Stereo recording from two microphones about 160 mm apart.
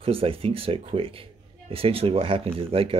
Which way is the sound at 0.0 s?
35° right (ahead or behind).